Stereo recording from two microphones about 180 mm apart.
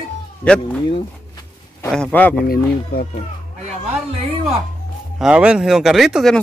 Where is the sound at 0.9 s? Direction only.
30° left (ahead or behind).